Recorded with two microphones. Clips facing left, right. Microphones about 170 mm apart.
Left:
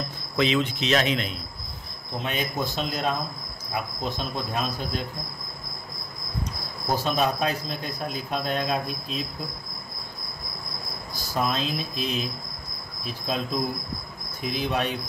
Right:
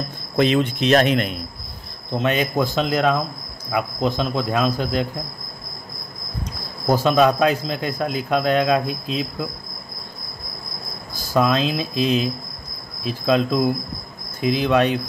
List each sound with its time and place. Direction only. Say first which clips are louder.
0.4 s a man's voice: right 6 dB; 50° right (ahead or behind)
2.1 s speech: right 9 dB; 90° right
6.9 s speech: right 8 dB; 90° right
11.3 s speech: right 8 dB; 90° right
13.0 s cricket: right 10 dB; 90° right
14.4 s speech: right 9 dB; 90° right